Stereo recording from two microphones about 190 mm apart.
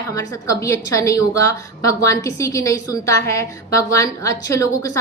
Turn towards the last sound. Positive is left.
turn(degrees=15)  # may be behind; listen again after turning